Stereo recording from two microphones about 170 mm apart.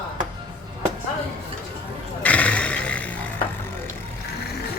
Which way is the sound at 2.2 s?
10° left (ahead or behind).